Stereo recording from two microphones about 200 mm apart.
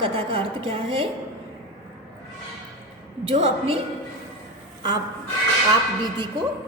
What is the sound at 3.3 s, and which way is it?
Speech, 30° right (ahead or behind).